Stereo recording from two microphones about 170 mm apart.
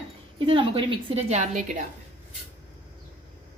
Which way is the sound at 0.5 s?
30° right (ahead or behind).